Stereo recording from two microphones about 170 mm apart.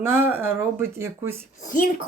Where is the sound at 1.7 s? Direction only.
55° left (ahead or behind).